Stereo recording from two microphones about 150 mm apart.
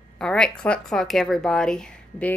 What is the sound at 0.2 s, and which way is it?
A woman's voice, 5° left (ahead or behind).